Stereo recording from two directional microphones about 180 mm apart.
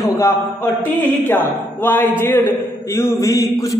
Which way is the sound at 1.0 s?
10° left (ahead or behind).